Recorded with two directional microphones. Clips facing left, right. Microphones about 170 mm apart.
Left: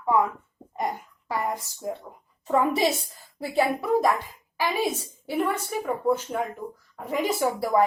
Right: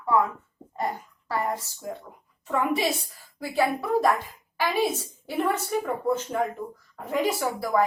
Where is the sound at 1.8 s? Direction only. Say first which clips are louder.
Left 4 dB; 20° left (ahead or behind).